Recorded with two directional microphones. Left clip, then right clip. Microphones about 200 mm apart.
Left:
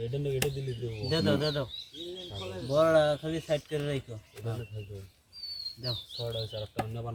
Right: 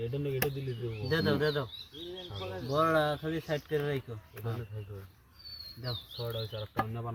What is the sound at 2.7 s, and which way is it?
Speech, 5° right (ahead or behind).